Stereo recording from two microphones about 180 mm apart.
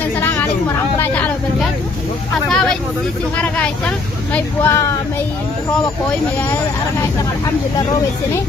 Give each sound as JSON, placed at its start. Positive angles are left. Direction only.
{"t": 0.2, "sound": "chatter", "side_deg": 10}
{"t": 0.9, "sound": "a sound", "side_deg": 10}
{"t": 2.5, "sound": "speech", "side_deg": 5}